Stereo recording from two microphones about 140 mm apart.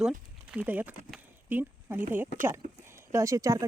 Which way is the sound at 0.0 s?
5° right (ahead or behind).